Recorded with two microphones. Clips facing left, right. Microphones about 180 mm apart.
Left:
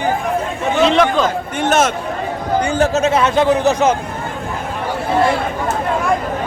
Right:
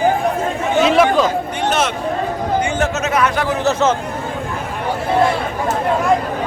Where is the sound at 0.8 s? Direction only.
5° right (ahead or behind).